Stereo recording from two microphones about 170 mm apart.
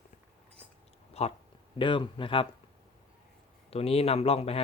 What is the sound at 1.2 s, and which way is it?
Speech, 35° left (ahead or behind).